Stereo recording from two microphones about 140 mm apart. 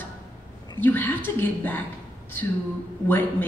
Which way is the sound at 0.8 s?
15° left (ahead or behind).